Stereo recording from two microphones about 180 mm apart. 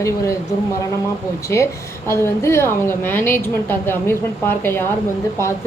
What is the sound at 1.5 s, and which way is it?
A woman's voice, 15° left (ahead or behind).